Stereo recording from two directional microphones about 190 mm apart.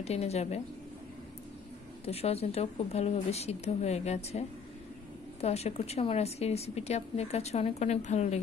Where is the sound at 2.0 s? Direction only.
30° left (ahead or behind).